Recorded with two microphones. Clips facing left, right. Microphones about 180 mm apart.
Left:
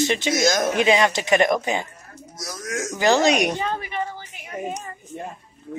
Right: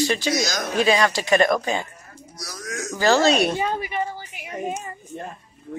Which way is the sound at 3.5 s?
10° right (ahead or behind).